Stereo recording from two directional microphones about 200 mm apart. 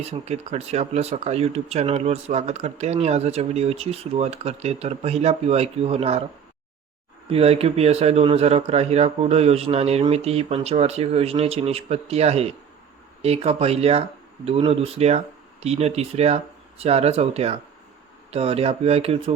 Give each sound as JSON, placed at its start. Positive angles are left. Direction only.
{"t": 0.0, "sound": "speech", "side_deg": -30}
{"t": 7.3, "sound": "speech", "side_deg": -30}